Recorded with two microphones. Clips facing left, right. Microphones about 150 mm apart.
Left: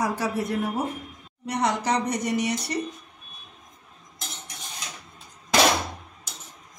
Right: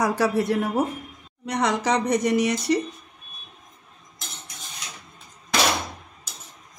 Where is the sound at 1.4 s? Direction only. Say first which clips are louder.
Right 2 dB; 90° right.